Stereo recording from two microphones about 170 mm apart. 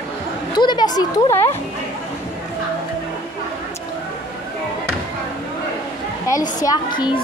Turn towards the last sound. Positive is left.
turn(degrees=20)  # may be behind; listen again after turning